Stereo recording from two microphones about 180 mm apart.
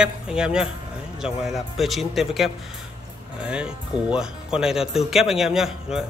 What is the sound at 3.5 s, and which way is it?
Speech, 5° right (ahead or behind).